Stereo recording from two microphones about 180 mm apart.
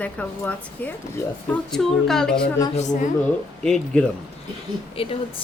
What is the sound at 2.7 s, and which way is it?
Speech, 40° left (ahead or behind).